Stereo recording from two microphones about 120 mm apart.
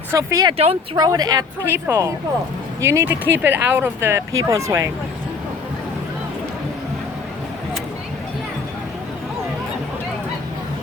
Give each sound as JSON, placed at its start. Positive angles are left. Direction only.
{"t": 0.1, "sound": "speech", "side_deg": -30}
{"t": 0.5, "sound": "speech", "side_deg": -55}
{"t": 0.9, "sound": "a woman's voice", "side_deg": -35}
{"t": 1.6, "sound": "speech", "side_deg": -20}